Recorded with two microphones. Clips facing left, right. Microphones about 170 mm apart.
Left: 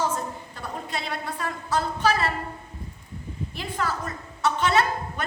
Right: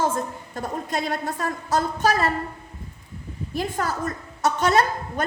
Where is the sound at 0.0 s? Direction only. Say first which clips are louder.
Right 3 dB; 50° right (ahead or behind).